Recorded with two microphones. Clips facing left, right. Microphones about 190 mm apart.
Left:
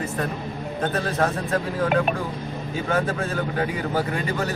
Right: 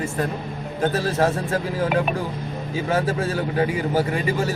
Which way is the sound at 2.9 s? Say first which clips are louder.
Right 2 dB; 30° right (ahead or behind).